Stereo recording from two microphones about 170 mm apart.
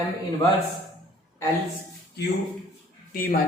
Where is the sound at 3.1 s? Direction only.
55° left (ahead or behind).